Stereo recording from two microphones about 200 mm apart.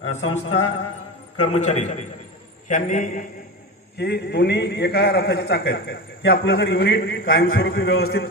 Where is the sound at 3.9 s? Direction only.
55° left (ahead or behind); by 8.2 s 85° left.